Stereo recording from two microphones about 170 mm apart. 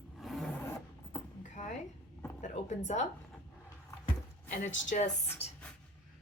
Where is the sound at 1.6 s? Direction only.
45° left (ahead or behind).